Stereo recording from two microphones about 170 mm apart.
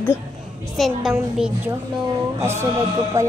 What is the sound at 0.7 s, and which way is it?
Speech, centre (ahead or behind).